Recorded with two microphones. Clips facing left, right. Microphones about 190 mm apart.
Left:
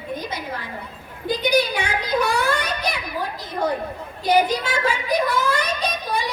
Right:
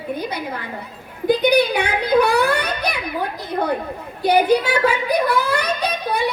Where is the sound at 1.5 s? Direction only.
60° right (ahead or behind).